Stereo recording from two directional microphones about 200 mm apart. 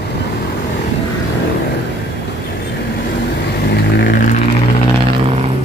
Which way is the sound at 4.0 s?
50° left (ahead or behind).